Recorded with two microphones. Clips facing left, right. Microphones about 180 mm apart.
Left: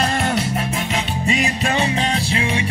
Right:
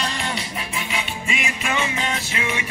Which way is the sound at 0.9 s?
35° left (ahead or behind).